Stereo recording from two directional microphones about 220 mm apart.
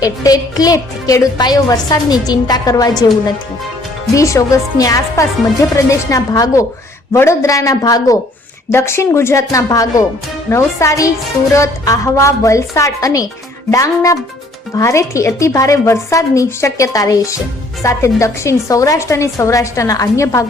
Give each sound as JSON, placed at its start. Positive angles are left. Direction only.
{"t": 0.0, "sound": "a woman's voice", "side_deg": 15}
{"t": 4.1, "sound": "a woman's voice", "side_deg": 15}